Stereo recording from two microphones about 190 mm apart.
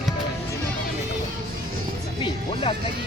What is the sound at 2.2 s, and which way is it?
Music, 30° left (ahead or behind).